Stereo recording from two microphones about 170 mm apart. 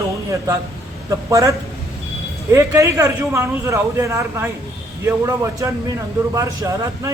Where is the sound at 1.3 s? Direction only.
20° right (ahead or behind).